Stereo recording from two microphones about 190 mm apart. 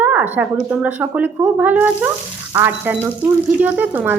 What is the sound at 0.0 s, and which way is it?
A woman's voice, 10° right (ahead or behind).